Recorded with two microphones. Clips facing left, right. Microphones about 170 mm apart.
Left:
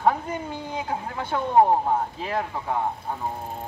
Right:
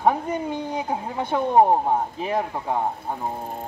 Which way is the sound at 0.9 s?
15° right (ahead or behind).